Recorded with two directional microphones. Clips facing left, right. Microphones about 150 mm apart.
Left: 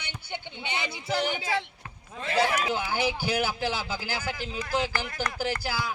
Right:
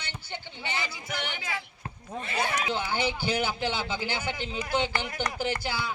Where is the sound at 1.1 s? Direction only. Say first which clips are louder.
Left 12 dB; 35° left (ahead or behind).